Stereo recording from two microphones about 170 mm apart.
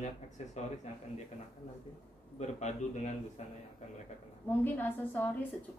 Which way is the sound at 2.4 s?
40° left (ahead or behind).